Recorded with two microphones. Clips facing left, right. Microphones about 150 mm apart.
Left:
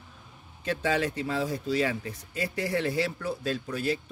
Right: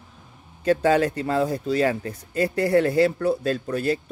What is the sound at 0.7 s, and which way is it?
Speech, 45° right (ahead or behind).